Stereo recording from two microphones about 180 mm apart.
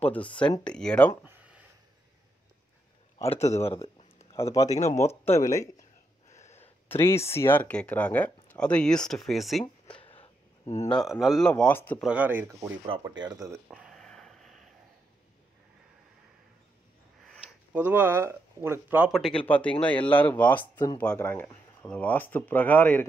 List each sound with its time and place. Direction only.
0.0 s speech: 10° left (ahead or behind)
1.2 s a sound: 5° right (ahead or behind)
3.2 s a man's voice: 40° left (ahead or behind)
3.6 s speech: 15° left (ahead or behind)
6.4 s a sound: 40° left (ahead or behind)
6.9 s speech: 15° left (ahead or behind)
10.0 s a sound: 30° left (ahead or behind)
10.9 s speech: centre (ahead or behind)
12.0 s speech: 10° right (ahead or behind)
12.8 s speech: 25° right (ahead or behind)
13.7 s a sound: centre (ahead or behind)
17.7 s speech: 10° right (ahead or behind)
19.1 s speech: 5° left (ahead or behind)